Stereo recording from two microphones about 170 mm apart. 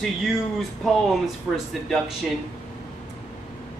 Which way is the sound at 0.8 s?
Centre (ahead or behind).